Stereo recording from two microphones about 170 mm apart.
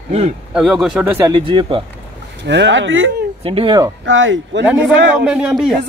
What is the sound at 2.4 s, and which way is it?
Speech, 90° right.